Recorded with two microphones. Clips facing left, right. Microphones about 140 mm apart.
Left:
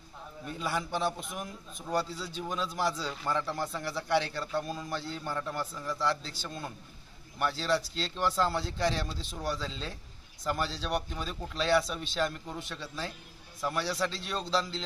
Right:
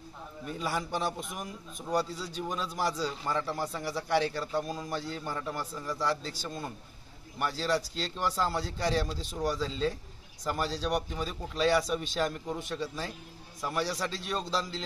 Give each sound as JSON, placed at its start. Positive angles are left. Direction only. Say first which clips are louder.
{"t": 0.5, "sound": "a man's voice", "louder": "even", "side_deg": -5}